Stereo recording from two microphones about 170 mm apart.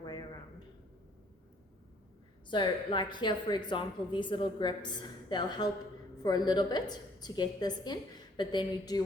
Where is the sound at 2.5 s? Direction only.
25° left (ahead or behind).